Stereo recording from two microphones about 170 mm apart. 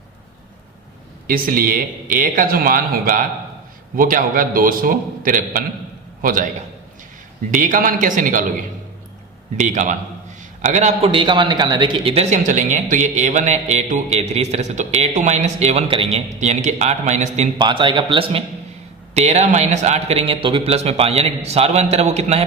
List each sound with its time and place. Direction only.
1.3 s a man's voice: 55° right (ahead or behind)
7.5 s a man's voice: 50° right (ahead or behind)
9.6 s a man's voice: 45° right (ahead or behind)
17.6 s a man's voice: 25° right (ahead or behind)